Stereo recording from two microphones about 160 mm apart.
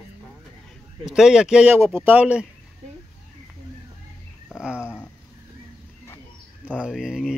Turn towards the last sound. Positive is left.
turn(degrees=-5)  # may be behind; listen again after turning